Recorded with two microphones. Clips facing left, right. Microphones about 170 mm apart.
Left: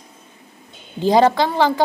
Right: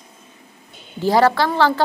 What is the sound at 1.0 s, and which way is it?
Speech, 20° left (ahead or behind).